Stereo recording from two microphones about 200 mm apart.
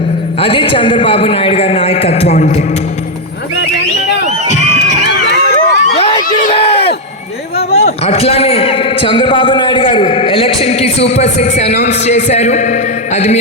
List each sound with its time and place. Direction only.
0.3 s a man's voice: 25° left (ahead or behind)
5.0 s crowd: 60° left (ahead or behind)
6.0 s a sound: 30° left (ahead or behind)
6.5 s crowd: 30° left (ahead or behind)
7.7 s a man's voice: 30° left (ahead or behind)